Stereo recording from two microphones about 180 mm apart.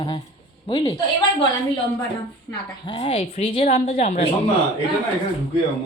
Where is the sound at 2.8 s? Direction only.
30° left (ahead or behind).